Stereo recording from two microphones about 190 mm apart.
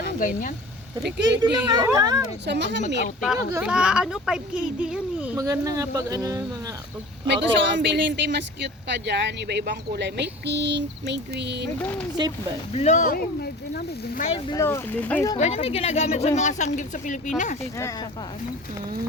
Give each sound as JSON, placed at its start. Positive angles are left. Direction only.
{"t": 0.2, "sound": "speech", "side_deg": 45}
{"t": 1.0, "sound": "speech", "side_deg": -60}
{"t": 1.4, "sound": "speech", "side_deg": -20}
{"t": 2.5, "sound": "speech", "side_deg": -65}
{"t": 3.5, "sound": "speech", "side_deg": -5}
{"t": 7.4, "sound": "speech", "side_deg": -70}
{"t": 11.8, "sound": "speech", "side_deg": 10}
{"t": 12.7, "sound": "speech", "side_deg": 35}
{"t": 14.5, "sound": "speech", "side_deg": 15}
{"t": 15.4, "sound": "speech", "side_deg": 35}